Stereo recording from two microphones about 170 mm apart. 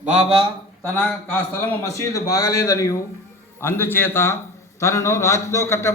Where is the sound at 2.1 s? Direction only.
20° left (ahead or behind).